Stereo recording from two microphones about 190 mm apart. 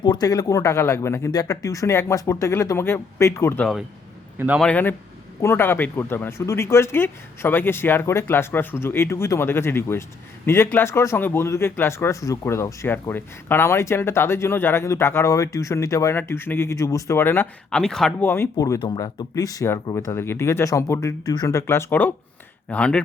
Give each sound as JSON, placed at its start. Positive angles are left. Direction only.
{"t": 0.0, "sound": "speech", "side_deg": 20}
{"t": 4.4, "sound": "a man's voice", "side_deg": -10}
{"t": 4.6, "sound": "speech", "side_deg": 10}